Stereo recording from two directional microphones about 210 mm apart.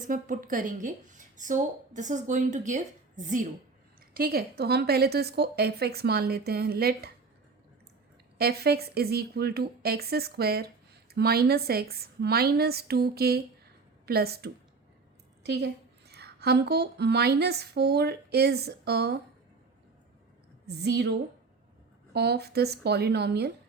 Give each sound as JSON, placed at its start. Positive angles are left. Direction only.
{"t": 0.1, "sound": "a woman's voice", "side_deg": -40}
{"t": 8.4, "sound": "a woman's voice", "side_deg": -50}
{"t": 20.7, "sound": "a woman's voice", "side_deg": -50}
{"t": 22.1, "sound": "a woman's voice", "side_deg": -50}